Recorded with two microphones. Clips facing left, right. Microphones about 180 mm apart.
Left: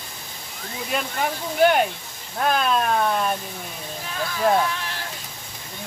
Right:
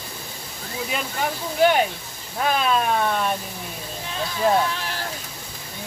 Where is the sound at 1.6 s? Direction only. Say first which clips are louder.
Even; centre (ahead or behind).